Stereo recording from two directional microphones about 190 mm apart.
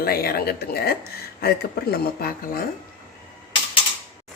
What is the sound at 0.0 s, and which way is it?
Speech, 55° left (ahead or behind).